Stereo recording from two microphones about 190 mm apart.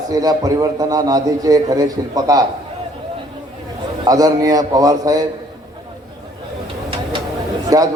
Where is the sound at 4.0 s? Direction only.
20° right (ahead or behind).